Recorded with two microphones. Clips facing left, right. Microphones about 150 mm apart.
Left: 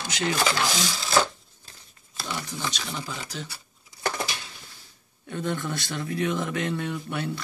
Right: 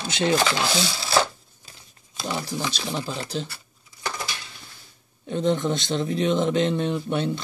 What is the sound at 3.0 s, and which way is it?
Speech, 30° right (ahead or behind).